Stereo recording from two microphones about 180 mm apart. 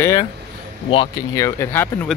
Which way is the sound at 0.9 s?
20° left (ahead or behind).